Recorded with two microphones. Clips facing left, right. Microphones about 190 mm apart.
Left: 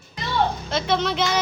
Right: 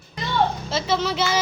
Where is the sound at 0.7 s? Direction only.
5° right (ahead or behind).